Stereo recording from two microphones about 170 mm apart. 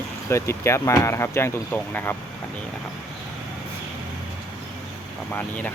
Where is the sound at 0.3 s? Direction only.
15° left (ahead or behind).